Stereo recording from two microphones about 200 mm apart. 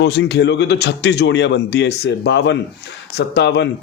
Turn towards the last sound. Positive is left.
turn(degrees=60)  # may be behind; listen again after turning